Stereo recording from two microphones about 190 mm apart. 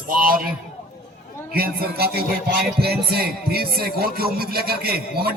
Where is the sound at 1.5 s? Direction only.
55° right (ahead or behind).